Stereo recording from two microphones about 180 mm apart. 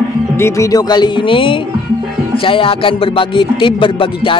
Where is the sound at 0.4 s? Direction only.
20° left (ahead or behind).